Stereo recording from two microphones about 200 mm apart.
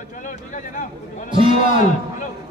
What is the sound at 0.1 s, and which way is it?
Speech, 40° left (ahead or behind).